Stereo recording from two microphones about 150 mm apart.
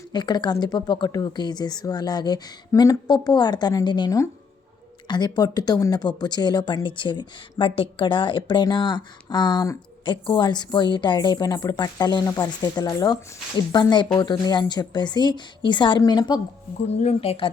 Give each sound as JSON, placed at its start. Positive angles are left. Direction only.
{"t": 0.1, "sound": "speech", "side_deg": 30}
{"t": 16.9, "sound": "speech", "side_deg": 45}